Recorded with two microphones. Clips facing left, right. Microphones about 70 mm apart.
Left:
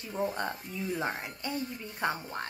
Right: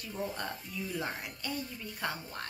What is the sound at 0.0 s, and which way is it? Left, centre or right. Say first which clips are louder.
Speech: left 5 dB; left.